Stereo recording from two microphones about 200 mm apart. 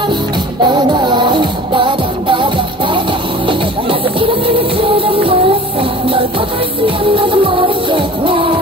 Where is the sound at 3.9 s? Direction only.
25° right (ahead or behind).